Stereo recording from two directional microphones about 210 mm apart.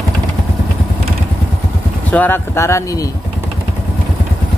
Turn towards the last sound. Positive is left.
turn(degrees=15)  # may be behind; listen again after turning